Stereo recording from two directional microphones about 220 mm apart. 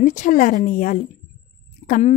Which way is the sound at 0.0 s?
35° left (ahead or behind).